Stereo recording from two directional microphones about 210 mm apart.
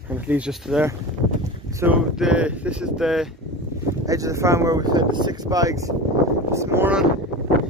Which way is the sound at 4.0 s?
15° right (ahead or behind).